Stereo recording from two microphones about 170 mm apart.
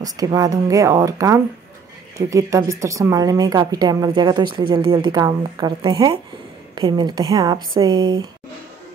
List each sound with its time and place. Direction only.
0.0 s a woman's voice: 20° right (ahead or behind)